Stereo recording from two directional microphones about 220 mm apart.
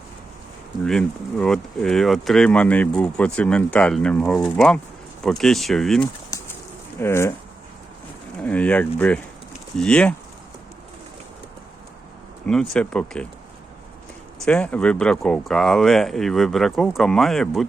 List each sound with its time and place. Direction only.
0.9 s speech: 5° left (ahead or behind)
6.3 s bird: 15° left (ahead or behind)
7.0 s speech: 10° left (ahead or behind)
8.4 s speech: 5° left (ahead or behind)
12.5 s speech: 5° left (ahead or behind)
14.4 s speech: 5° left (ahead or behind)